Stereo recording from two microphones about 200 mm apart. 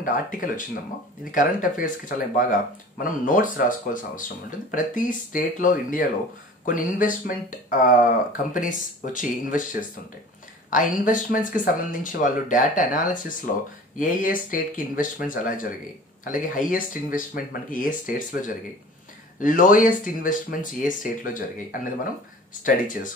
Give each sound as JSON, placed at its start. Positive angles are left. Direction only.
{"t": 0.0, "sound": "speech", "side_deg": 45}
{"t": 8.5, "sound": "speech", "side_deg": 40}